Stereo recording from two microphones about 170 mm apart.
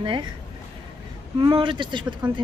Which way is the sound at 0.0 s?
30° right (ahead or behind).